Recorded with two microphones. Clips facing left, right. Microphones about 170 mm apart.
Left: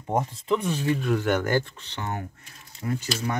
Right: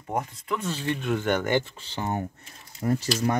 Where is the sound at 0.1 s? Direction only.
20° left (ahead or behind).